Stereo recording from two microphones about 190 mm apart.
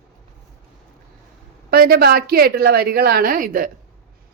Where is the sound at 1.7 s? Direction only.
55° right (ahead or behind).